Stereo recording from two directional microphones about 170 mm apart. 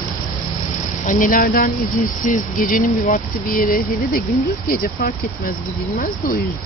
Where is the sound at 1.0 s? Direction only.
55° left (ahead or behind).